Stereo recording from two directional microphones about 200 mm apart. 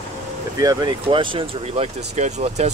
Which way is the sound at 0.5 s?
20° right (ahead or behind).